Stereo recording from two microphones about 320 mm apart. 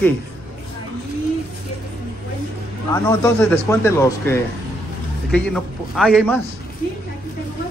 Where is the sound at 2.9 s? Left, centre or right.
Centre.